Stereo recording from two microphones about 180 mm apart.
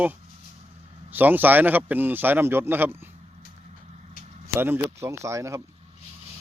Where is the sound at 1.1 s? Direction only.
10° right (ahead or behind).